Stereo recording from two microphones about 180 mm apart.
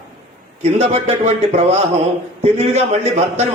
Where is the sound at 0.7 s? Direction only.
35° right (ahead or behind).